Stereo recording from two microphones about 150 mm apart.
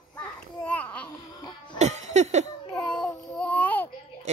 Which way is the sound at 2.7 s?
5° left (ahead or behind).